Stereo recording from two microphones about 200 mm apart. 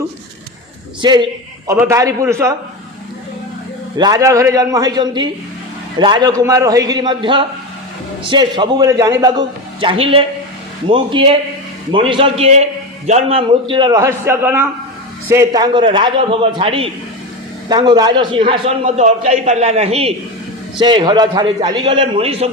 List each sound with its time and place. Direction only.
1.0 s a man's voice: 25° right (ahead or behind)
3.9 s a man's voice: 20° right (ahead or behind)